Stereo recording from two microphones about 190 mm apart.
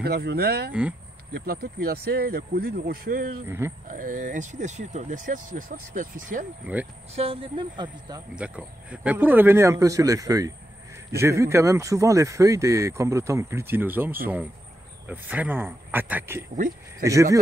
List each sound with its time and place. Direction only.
0.0 s speech: 60° right (ahead or behind)
3.4 s speech: 10° right (ahead or behind)
3.8 s speech: 45° right (ahead or behind)
6.6 s speech: 5° right (ahead or behind)
7.2 s speech: 30° right (ahead or behind)
8.4 s speech: 5° right (ahead or behind)